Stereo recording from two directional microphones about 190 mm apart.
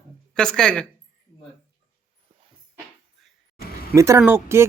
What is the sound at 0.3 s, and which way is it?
Speech, 5° left (ahead or behind).